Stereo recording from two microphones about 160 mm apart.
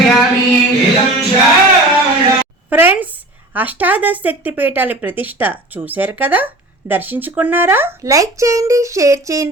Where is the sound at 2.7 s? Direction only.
10° right (ahead or behind).